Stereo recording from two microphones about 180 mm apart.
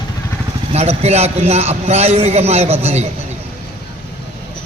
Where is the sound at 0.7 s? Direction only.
35° right (ahead or behind).